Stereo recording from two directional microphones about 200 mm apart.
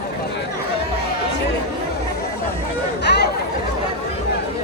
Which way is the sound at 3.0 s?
55° left (ahead or behind).